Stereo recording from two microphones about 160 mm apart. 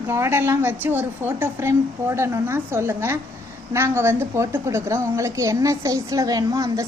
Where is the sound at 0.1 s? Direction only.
15° right (ahead or behind).